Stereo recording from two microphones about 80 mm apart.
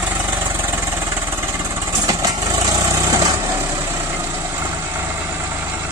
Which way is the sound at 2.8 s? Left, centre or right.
Right.